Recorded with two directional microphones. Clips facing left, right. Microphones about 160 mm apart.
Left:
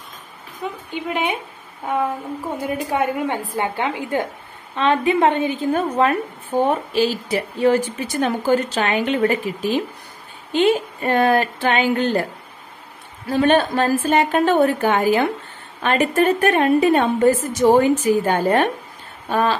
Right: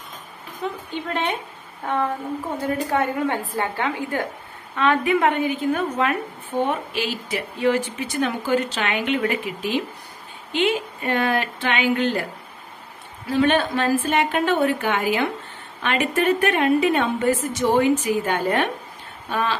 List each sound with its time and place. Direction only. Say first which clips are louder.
0.6 s a woman's voice: left 1 dB; 5° left (ahead or behind); by 12.2 s 40° left (ahead or behind)
13.3 s speech: left 3 dB; 45° left (ahead or behind)